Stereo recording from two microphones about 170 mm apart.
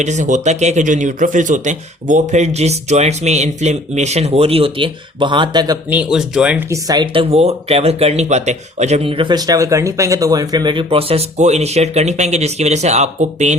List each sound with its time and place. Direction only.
0.0 s speech: 45° right (ahead or behind); by 5.8 s 25° right (ahead or behind)
5.9 s speech: 5° right (ahead or behind)
6.7 s speech: 25° right (ahead or behind); by 13.6 s 45° right (ahead or behind)